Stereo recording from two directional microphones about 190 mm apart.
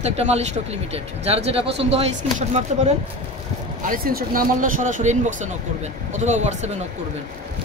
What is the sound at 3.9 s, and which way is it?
Speech, 50° right (ahead or behind).